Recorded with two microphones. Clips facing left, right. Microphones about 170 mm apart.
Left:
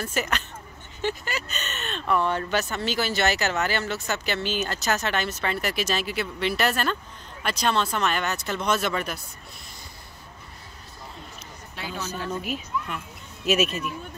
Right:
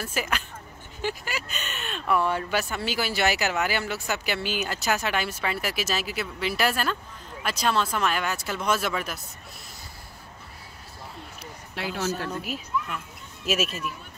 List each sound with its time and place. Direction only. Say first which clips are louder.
0.0 s speech: left 2 dB; 5° right (ahead or behind)
11.7 s speech: right 4 dB; 75° right (ahead or behind)
12.4 s speech: even; centre (ahead or behind)